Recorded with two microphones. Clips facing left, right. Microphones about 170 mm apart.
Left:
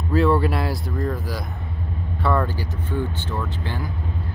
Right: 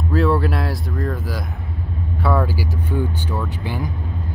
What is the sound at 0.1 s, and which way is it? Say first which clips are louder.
Speech: even; centre (ahead or behind).